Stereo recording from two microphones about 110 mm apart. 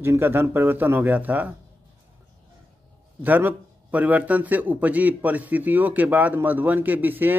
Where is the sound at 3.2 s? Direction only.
15° right (ahead or behind).